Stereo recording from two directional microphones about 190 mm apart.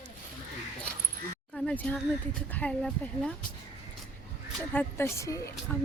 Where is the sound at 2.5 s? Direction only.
5° left (ahead or behind).